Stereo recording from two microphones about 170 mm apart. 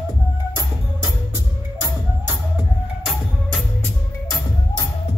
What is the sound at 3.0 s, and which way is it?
Music, centre (ahead or behind).